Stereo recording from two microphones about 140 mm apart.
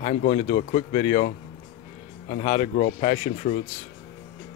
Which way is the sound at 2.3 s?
45° left (ahead or behind).